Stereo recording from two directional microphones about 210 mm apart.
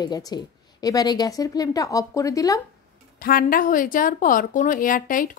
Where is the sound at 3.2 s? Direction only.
45° left (ahead or behind).